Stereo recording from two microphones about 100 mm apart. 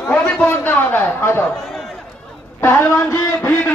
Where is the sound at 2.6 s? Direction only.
20° left (ahead or behind).